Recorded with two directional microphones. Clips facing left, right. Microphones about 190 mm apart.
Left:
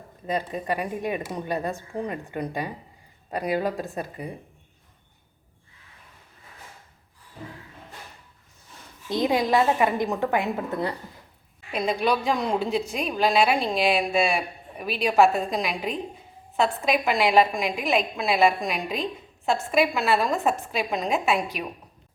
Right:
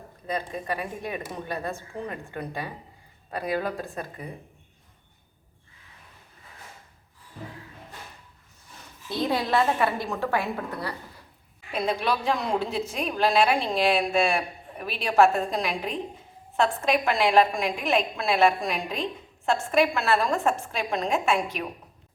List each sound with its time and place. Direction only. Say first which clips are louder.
0.7 s a woman's voice: left 5 dB; 20° left (ahead or behind)
9.0 s a woman's voice: left 4 dB; 15° left (ahead or behind)
11.7 s a woman's voice: left 2 dB; centre (ahead or behind)